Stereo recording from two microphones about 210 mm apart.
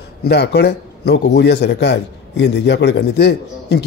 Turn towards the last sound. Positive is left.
turn(degrees=50)  # may be behind; listen again after turning